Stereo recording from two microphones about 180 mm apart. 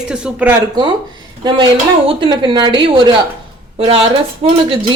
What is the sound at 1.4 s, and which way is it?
Speech, 25° right (ahead or behind).